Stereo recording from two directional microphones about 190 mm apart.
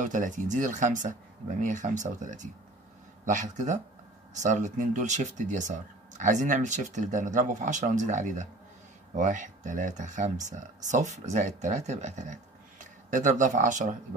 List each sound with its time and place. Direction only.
0.0 s speech: 40° right (ahead or behind)